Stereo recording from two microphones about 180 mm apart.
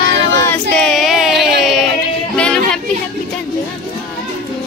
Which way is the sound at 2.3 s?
5° left (ahead or behind).